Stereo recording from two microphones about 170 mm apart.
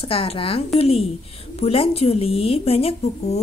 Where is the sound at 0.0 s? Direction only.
35° left (ahead or behind).